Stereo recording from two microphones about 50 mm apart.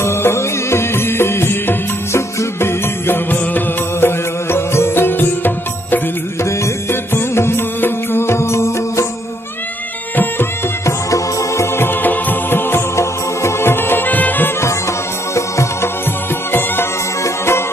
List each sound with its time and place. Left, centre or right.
0.0 s music: left
3.3 s music: left
4.5 s music: left
6.9 s music: left
10.9 s music: left
11.7 s music: left
12.9 s music: left
15.3 s music: left
17.2 s music: left